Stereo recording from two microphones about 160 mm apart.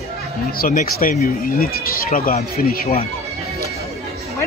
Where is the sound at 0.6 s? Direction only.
65° left (ahead or behind).